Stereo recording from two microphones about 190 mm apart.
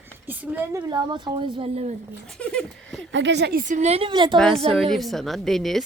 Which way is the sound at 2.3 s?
5° left (ahead or behind).